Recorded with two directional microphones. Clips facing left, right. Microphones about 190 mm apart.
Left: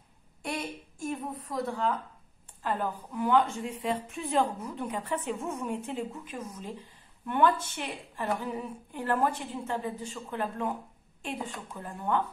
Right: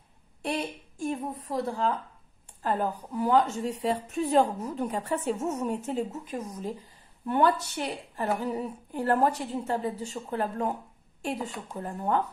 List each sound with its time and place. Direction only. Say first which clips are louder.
0.4 s a woman's voice: right 4 dB; 30° right (ahead or behind)